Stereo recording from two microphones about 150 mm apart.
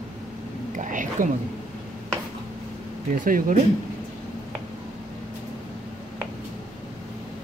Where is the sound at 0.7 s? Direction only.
60° right (ahead or behind).